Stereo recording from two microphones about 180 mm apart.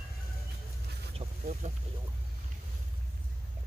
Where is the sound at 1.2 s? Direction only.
30° right (ahead or behind).